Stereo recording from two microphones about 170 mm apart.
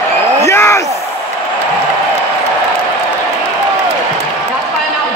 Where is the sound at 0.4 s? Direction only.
15° left (ahead or behind).